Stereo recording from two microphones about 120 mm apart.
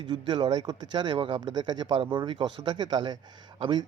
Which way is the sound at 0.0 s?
40° right (ahead or behind).